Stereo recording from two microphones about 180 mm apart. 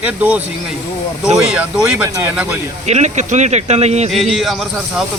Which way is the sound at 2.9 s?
40° right (ahead or behind).